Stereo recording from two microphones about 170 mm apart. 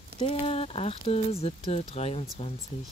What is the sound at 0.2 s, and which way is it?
Speech, 35° left (ahead or behind).